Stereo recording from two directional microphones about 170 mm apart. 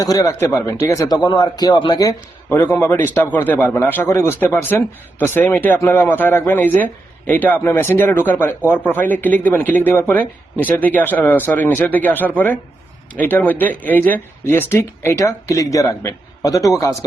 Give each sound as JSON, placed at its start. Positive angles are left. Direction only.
{"t": 0.0, "sound": "speech", "side_deg": 20}
{"t": 2.5, "sound": "speech", "side_deg": 10}